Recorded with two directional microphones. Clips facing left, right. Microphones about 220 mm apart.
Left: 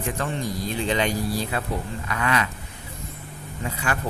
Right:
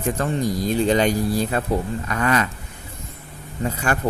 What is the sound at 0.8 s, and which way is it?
Speech, 40° right (ahead or behind).